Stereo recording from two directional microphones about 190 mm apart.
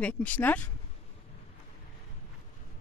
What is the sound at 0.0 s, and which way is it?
Speech, 10° left (ahead or behind).